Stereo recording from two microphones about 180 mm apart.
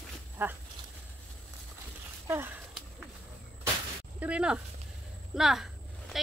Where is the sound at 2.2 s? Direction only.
10° right (ahead or behind).